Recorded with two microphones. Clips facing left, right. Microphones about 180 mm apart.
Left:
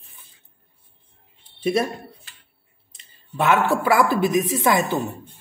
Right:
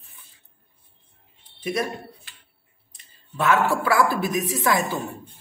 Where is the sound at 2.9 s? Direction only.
20° left (ahead or behind).